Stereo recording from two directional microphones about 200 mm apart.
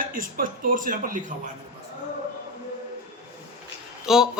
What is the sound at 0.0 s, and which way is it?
Speech, 45° right (ahead or behind).